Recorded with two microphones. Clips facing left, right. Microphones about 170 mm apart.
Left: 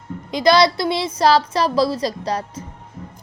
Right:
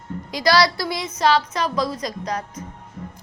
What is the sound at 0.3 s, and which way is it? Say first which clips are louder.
A woman's voice: left 4 dB; 20° left (ahead or behind).